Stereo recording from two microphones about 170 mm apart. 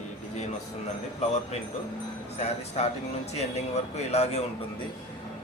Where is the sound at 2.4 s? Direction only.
40° left (ahead or behind).